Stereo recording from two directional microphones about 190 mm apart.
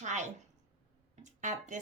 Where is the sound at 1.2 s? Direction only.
40° right (ahead or behind).